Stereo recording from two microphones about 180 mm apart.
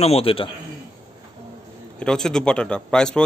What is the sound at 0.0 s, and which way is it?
Speech, 35° left (ahead or behind).